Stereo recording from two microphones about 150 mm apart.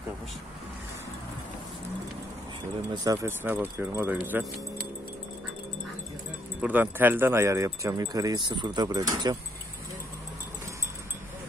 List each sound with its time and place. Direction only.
2.9 s speech: 30° right (ahead or behind)
3.2 s speech: 15° right (ahead or behind)
6.6 s speech: 10° right (ahead or behind)